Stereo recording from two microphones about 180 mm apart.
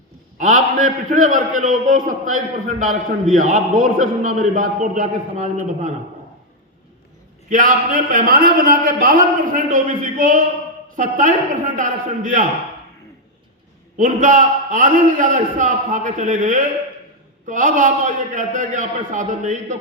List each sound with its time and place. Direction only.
0.3 s a man's voice: 45° right (ahead or behind)
7.5 s a man's voice: 45° right (ahead or behind)
13.9 s a man's voice: 45° right (ahead or behind)